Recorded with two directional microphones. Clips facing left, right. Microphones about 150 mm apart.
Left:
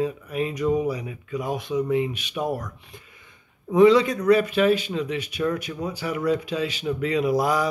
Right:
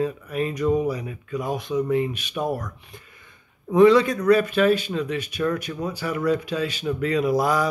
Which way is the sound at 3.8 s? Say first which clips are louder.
Right 1 dB; 20° left (ahead or behind).